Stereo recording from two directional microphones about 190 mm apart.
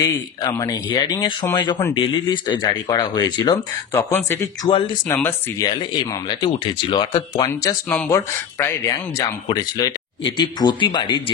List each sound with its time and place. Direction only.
0.0 s speech: 15° left (ahead or behind)
4.6 s speech: 30° left (ahead or behind)
5.0 s speech: 15° left (ahead or behind)
5.7 s speech: 25° left (ahead or behind)